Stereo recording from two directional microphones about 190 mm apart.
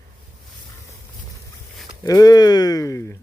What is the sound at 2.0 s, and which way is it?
Speech, 20° left (ahead or behind).